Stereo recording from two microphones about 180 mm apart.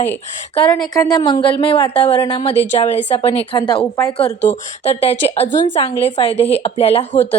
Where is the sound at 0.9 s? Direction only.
20° left (ahead or behind).